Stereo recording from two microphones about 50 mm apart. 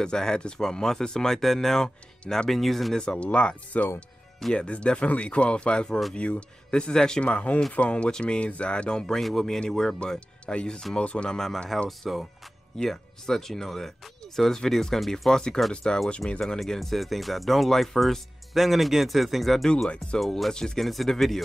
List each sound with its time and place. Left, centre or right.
0.0 s speech: centre
3.0 s speech: centre
7.2 s speech: left; by 9.9 s centre
9.9 s speech: left
11.3 s speech: centre
12.1 s speech: centre
12.7 s speech: centre
20.8 s speech: centre